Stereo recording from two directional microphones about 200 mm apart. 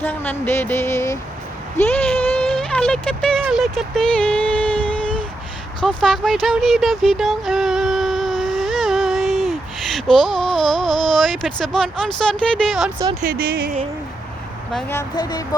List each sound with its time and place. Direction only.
0.0 s speech: 10° left (ahead or behind)
1.9 s a sound: 5° left (ahead or behind)
3.4 s speech: centre (ahead or behind)
4.9 s a sound: 5° left (ahead or behind)
12.3 s speech: 5° left (ahead or behind)
13.2 s speech: 45° right (ahead or behind)
14.8 s speech: 15° left (ahead or behind)